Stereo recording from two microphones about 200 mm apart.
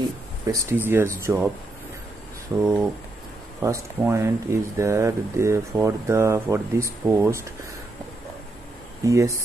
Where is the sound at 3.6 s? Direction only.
15° right (ahead or behind).